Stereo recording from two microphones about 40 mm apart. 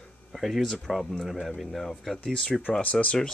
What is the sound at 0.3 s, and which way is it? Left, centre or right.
Speech, centre.